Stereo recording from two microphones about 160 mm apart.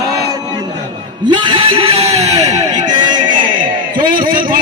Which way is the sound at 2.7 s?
30° right (ahead or behind).